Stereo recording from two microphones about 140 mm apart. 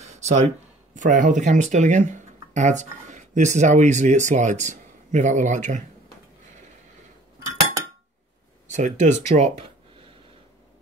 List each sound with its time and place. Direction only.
0.0 s a sound: 50° right (ahead or behind)
0.9 s speech: 65° right (ahead or behind)
8.6 s speech: 60° right (ahead or behind)